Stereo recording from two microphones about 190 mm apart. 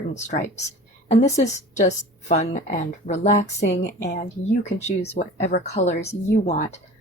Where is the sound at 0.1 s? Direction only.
40° left (ahead or behind).